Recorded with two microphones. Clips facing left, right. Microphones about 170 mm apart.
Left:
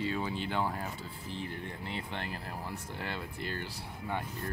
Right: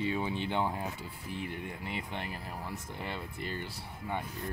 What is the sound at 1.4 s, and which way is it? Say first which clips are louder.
Speech: right 1 dB; 5° right (ahead or behind).